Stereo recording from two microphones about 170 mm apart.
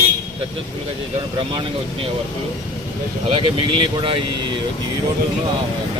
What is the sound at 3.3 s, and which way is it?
Speech, 30° right (ahead or behind).